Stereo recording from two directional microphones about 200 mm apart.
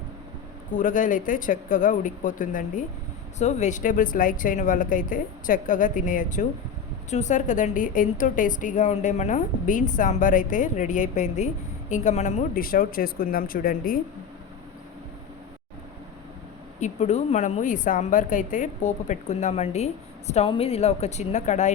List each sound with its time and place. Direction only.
0.7 s a woman's voice: 40° left (ahead or behind)
16.8 s a woman's voice: 35° left (ahead or behind)